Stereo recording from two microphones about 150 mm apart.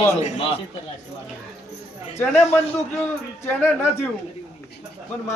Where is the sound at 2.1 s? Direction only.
15° left (ahead or behind).